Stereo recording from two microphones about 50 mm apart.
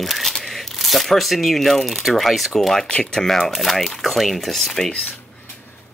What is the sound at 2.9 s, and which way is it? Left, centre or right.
Speech, centre.